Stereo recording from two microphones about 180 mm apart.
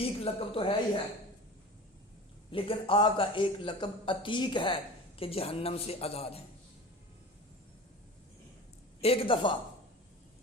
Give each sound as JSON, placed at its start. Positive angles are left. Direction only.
{"t": 0.0, "sound": "speech", "side_deg": 30}
{"t": 2.5, "sound": "a man's voice", "side_deg": 30}
{"t": 9.0, "sound": "a man's voice", "side_deg": 35}